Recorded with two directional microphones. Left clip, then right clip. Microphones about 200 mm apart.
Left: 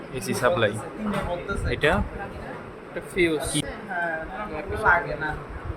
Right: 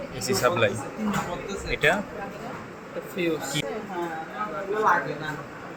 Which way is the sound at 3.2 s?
50° left (ahead or behind).